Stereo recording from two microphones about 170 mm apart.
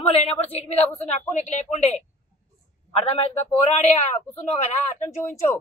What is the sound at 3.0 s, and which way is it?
Speech, 35° left (ahead or behind).